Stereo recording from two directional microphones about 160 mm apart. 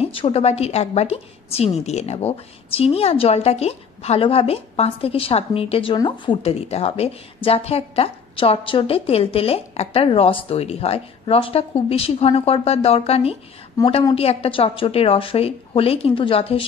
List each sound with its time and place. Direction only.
0.0 s a woman's voice: 35° left (ahead or behind)